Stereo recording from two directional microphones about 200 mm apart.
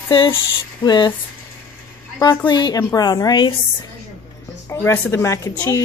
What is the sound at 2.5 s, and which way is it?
A woman's voice, 20° left (ahead or behind).